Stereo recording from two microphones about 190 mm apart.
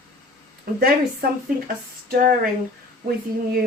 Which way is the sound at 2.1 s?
45° right (ahead or behind).